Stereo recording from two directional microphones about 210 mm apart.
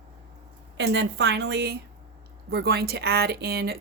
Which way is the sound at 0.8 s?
55° right (ahead or behind).